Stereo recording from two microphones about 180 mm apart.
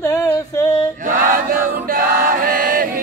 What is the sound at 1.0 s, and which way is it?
Chant, 50° right (ahead or behind).